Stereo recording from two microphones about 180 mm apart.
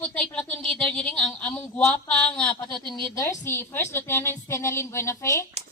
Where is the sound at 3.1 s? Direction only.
15° left (ahead or behind).